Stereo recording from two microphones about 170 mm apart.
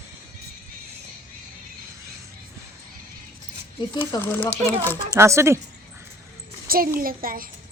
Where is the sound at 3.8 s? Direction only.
25° left (ahead or behind).